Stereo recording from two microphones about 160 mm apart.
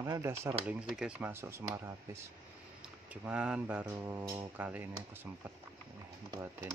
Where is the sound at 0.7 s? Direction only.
5° right (ahead or behind).